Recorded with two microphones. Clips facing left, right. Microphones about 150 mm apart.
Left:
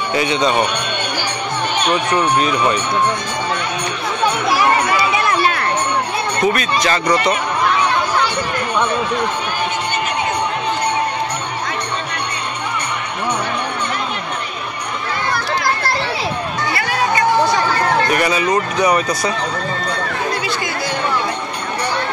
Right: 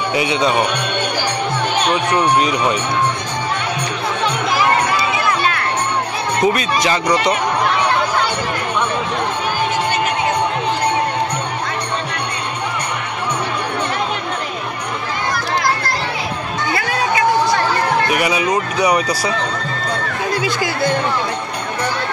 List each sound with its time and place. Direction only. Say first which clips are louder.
0.1 s speech: left 1 dB; 10° right (ahead or behind)
2.3 s speech: even; 15° right (ahead or behind)
6.4 s speech: right 1 dB; 20° right (ahead or behind)
18.1 s speech: left 1 dB; 10° right (ahead or behind)